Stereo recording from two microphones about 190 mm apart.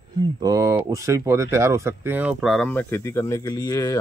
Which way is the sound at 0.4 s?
20° right (ahead or behind).